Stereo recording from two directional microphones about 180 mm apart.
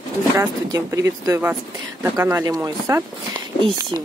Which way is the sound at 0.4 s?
15° right (ahead or behind).